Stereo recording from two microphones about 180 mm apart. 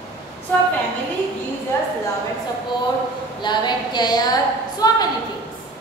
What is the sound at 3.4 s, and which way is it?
A woman's voice, 25° left (ahead or behind).